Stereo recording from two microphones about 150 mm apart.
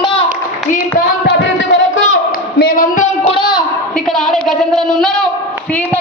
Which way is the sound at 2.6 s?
75° left (ahead or behind).